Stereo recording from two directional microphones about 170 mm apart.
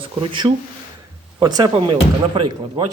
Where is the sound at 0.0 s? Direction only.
30° right (ahead or behind).